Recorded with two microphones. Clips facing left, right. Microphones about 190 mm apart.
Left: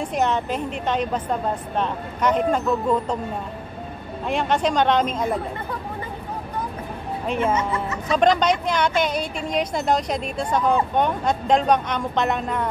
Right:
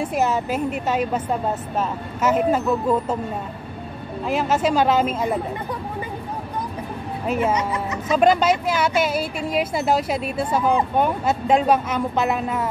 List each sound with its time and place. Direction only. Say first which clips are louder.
0.0 s a woman's voice: right 1 dB; 5° right (ahead or behind)
4.3 s a woman's voice: right 1 dB; 5° right (ahead or behind)
7.2 s a woman's voice: right 1 dB; 5° right (ahead or behind)
7.5 s a woman's voice: even; 20° right (ahead or behind)
8.1 s a woman's voice: right 1 dB; 5° right (ahead or behind)